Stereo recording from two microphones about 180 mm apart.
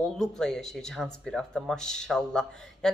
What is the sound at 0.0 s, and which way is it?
Speech, 5° left (ahead or behind).